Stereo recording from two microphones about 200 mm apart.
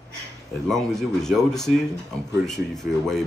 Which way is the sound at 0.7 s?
Centre (ahead or behind).